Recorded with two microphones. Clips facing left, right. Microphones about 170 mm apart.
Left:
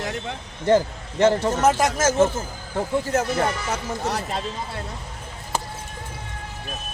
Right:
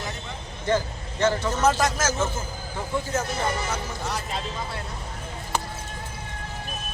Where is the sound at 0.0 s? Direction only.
75° left (ahead or behind).